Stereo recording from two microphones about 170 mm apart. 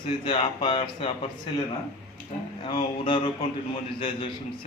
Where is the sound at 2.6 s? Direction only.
30° left (ahead or behind).